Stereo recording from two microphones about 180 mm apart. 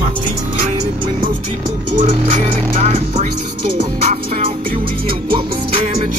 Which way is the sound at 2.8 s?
40° right (ahead or behind).